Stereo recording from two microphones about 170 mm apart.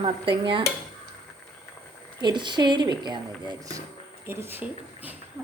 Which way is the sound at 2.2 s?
25° right (ahead or behind).